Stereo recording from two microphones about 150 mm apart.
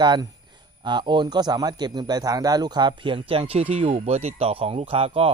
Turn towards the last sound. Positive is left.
turn(degrees=-40)  # may be behind; listen again after turning